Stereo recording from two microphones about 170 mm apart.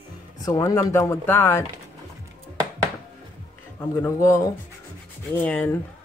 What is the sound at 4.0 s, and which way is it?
Speech, 15° left (ahead or behind).